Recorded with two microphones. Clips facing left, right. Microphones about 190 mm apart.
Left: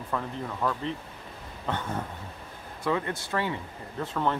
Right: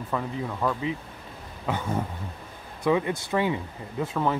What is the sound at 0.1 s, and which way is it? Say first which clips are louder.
Speech: right 2 dB; 5° right (ahead or behind).